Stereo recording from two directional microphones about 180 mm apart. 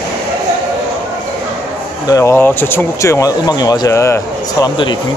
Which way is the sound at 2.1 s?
15° left (ahead or behind).